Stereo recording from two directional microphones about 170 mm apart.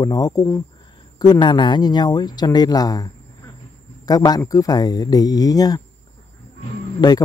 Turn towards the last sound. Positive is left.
turn(degrees=25)  # may be behind; listen again after turning